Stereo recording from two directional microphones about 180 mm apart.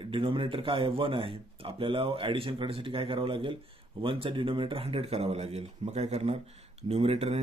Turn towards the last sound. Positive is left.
turn(degrees=-35)  # may be behind; listen again after turning